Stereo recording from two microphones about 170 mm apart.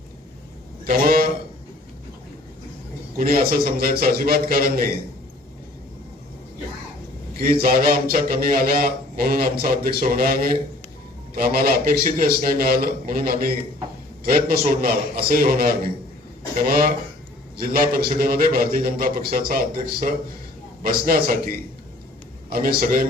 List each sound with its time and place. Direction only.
0.9 s a man's voice: 60° right (ahead or behind)
3.2 s a man's voice: 60° right (ahead or behind)
7.3 s a man's voice: 60° right (ahead or behind)